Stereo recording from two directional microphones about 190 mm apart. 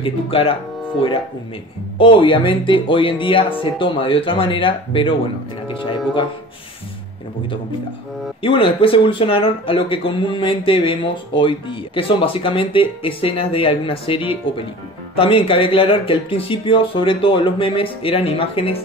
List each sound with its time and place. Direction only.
0.0 s speech: 30° left (ahead or behind)
2.0 s speech: 25° left (ahead or behind)
8.4 s speech: 30° left (ahead or behind)